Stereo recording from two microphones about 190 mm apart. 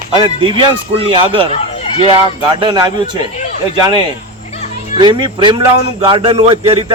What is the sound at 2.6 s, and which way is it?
A man's voice, 25° right (ahead or behind).